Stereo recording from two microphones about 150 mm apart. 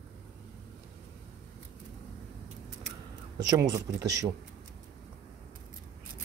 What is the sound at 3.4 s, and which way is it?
Speech, 25° right (ahead or behind).